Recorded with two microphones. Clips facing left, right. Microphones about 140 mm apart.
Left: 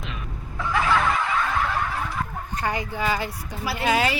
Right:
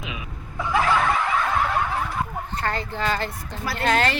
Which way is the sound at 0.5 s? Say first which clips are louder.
Right 2 dB; 15° right (ahead or behind).